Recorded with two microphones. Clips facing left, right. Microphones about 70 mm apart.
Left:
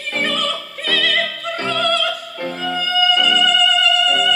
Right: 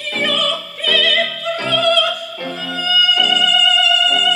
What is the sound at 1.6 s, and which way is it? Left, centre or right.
Opera, left.